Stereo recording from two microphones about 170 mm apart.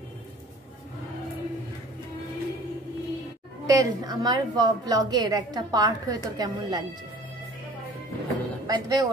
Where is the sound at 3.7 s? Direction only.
20° right (ahead or behind).